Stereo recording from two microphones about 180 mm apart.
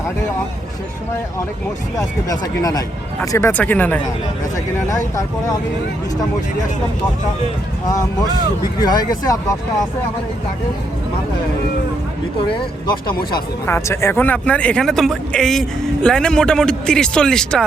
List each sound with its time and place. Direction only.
2.0 s speech: 20° left (ahead or behind)
8.8 s speech: 20° left (ahead or behind)
13.7 s speech: 15° left (ahead or behind)